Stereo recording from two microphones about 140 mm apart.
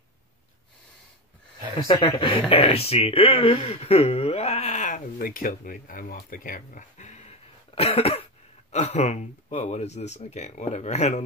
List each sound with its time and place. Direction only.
1.9 s speech: 35° left (ahead or behind); by 11.2 s 55° left (ahead or behind)